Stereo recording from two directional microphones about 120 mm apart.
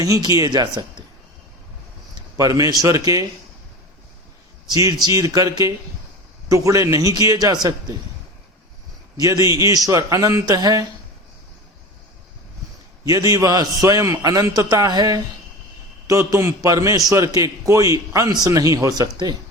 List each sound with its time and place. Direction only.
0.0 s speech: 30° right (ahead or behind)
2.4 s speech: 30° right (ahead or behind)
4.7 s speech: 30° right (ahead or behind)
9.1 s speech: 30° right (ahead or behind)
13.1 s speech: 30° right (ahead or behind)